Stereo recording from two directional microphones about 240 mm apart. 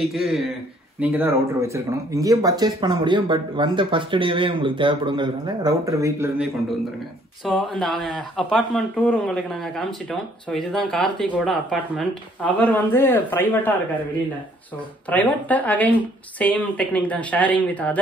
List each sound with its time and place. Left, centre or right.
0.0 s a man's voice: centre
15.0 s a woman's voice: centre